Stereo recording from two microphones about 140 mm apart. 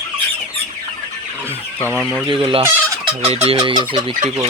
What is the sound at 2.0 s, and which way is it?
Speech, 5° right (ahead or behind).